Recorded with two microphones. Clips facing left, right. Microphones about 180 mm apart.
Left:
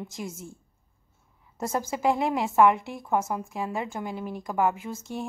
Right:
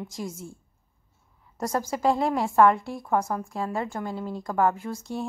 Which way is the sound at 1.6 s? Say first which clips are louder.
Right 1 dB; 25° left (ahead or behind).